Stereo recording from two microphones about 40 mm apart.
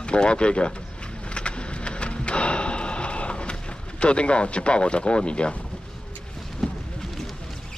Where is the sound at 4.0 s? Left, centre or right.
Left.